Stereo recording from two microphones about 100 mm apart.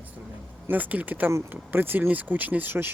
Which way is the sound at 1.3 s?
30° right (ahead or behind).